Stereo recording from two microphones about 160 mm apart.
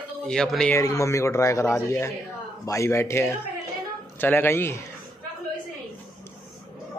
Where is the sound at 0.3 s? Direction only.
5° left (ahead or behind).